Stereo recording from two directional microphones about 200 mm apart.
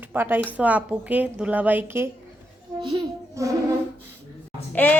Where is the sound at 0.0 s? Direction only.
10° right (ahead or behind).